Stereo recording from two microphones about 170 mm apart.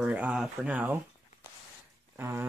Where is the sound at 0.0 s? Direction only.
10° right (ahead or behind).